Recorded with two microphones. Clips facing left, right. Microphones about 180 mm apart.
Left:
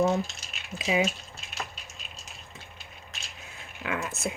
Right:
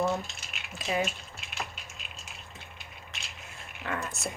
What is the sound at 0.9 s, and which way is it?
Speech, 90° left.